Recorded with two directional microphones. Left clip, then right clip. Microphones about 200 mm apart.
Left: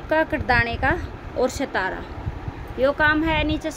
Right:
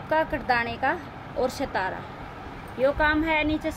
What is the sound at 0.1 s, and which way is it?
A woman's voice, 60° left (ahead or behind).